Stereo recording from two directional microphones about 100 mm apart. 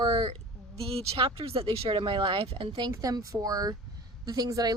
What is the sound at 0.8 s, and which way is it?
Speech, 80° right.